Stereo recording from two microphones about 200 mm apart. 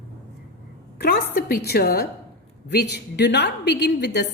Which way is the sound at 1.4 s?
50° left (ahead or behind).